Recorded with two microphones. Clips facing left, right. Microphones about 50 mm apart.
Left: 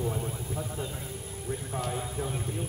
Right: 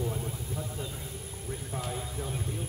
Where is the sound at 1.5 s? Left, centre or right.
Centre.